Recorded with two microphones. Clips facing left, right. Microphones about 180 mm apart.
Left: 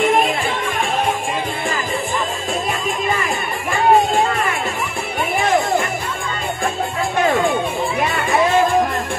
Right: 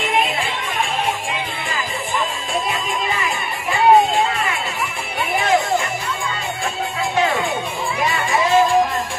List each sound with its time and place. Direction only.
0.0 s music: 45° left (ahead or behind)
3.1 s chatter: 45° left (ahead or behind)
8.0 s music: 55° left (ahead or behind)